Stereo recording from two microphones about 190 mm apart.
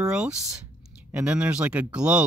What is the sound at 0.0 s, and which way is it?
Speech, 5° right (ahead or behind).